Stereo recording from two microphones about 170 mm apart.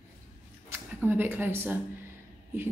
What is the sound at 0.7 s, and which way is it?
A woman's voice, 10° right (ahead or behind).